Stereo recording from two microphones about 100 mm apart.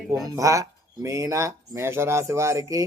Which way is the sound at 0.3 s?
35° right (ahead or behind).